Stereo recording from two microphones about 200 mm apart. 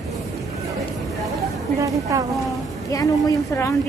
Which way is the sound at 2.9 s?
15° left (ahead or behind).